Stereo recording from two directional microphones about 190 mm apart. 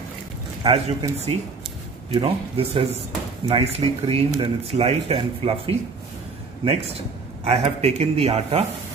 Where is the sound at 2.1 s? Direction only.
30° right (ahead or behind).